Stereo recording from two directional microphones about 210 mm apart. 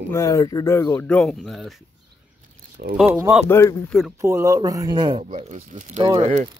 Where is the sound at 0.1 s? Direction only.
15° left (ahead or behind).